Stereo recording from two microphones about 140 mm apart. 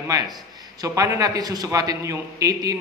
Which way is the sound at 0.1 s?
30° right (ahead or behind).